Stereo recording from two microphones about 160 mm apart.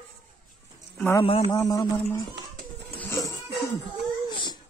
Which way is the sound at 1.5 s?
25° left (ahead or behind).